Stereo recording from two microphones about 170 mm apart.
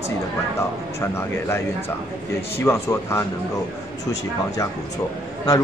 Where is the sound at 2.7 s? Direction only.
15° left (ahead or behind).